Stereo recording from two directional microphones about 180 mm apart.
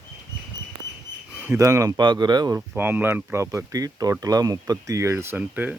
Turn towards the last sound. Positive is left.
turn(degrees=-10)  # may be behind; listen again after turning